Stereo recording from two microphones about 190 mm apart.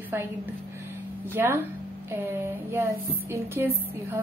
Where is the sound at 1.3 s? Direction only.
15° right (ahead or behind).